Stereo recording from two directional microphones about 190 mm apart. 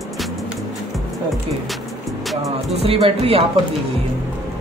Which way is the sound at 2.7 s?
30° right (ahead or behind).